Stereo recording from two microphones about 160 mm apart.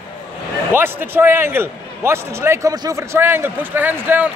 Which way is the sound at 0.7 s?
15° right (ahead or behind).